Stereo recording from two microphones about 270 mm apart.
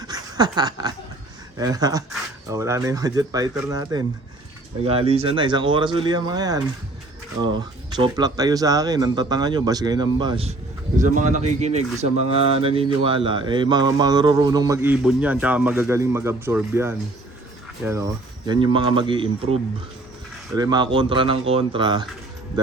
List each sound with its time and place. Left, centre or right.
0.0 s chuckle: centre
1.5 s speech: centre
20.6 s speech: centre